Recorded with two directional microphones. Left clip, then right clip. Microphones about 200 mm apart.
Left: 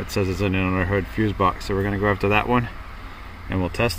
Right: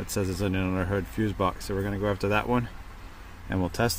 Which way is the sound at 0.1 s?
5° right (ahead or behind).